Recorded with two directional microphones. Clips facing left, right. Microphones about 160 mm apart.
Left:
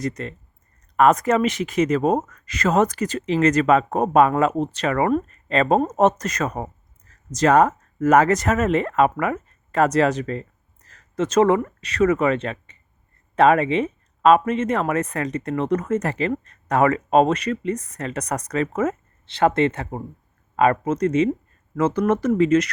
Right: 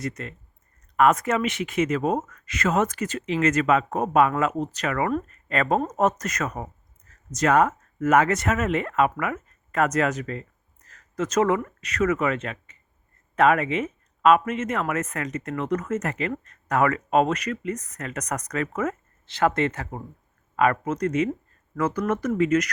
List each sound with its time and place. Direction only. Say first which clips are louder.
0.0 s speech: left 5 dB; 35° left (ahead or behind)